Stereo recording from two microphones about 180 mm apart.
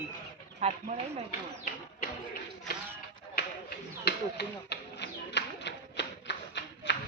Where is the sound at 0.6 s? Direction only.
35° right (ahead or behind).